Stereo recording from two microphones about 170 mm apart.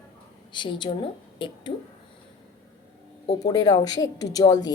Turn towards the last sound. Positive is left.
turn(degrees=20)  # may be behind; listen again after turning